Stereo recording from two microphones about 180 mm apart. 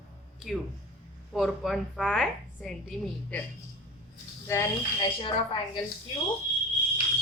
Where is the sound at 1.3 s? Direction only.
Centre (ahead or behind).